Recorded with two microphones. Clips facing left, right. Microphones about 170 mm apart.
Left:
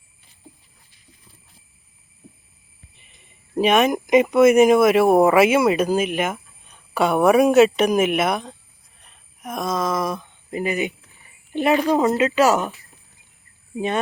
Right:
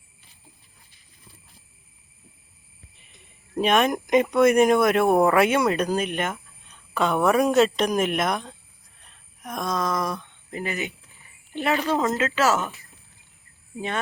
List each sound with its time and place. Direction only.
3.5 s speech: 5° left (ahead or behind)
13.7 s speech: 15° left (ahead or behind)